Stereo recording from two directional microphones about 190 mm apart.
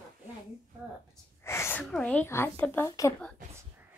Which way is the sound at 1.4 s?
15° left (ahead or behind).